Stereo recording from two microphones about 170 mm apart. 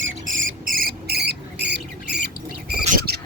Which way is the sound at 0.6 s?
55° right (ahead or behind).